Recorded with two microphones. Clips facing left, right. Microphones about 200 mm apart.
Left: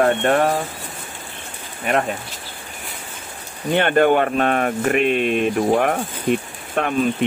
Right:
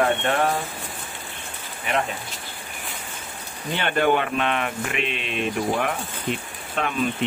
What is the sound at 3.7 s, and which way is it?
Speech, 50° left (ahead or behind).